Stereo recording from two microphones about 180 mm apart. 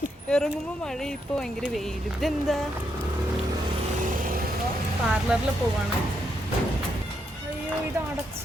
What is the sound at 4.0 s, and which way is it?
Vehicle, 50° right (ahead or behind).